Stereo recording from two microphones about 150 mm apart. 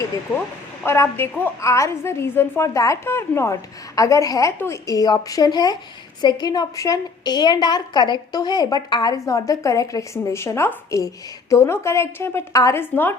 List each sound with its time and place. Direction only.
0.9 s a woman's voice: 15° left (ahead or behind)